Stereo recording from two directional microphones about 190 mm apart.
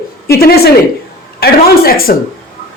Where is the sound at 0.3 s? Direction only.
55° left (ahead or behind).